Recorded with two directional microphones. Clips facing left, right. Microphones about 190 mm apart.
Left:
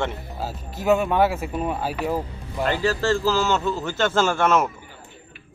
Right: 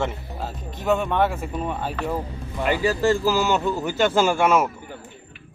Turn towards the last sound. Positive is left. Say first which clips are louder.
# right 1 dB
turn(degrees=-10)  # may be behind; listen again after turning